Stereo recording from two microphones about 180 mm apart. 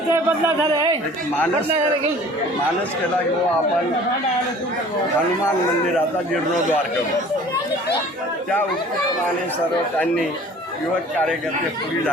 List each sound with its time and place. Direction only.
0.1 s speech: 15° right (ahead or behind)